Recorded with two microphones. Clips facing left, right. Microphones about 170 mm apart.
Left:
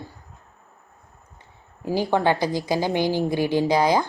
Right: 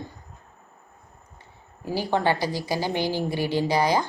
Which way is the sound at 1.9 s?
15° left (ahead or behind).